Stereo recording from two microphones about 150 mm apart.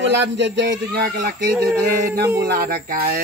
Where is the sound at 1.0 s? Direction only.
90° right.